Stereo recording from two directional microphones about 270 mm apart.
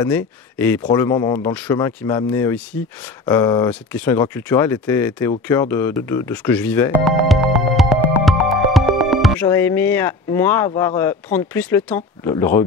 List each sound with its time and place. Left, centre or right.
0.1 s speech: centre
5.5 s music: centre
9.5 s speech: centre
10.7 s speech: centre
11.0 s speech: centre